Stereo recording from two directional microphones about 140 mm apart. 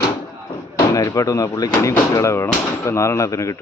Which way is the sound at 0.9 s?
25° left (ahead or behind).